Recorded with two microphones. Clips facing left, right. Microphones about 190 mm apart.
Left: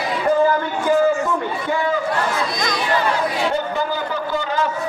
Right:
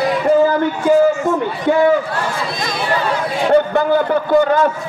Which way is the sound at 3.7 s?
60° right (ahead or behind).